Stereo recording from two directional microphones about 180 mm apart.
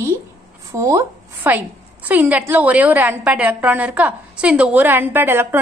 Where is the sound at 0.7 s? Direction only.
15° right (ahead or behind).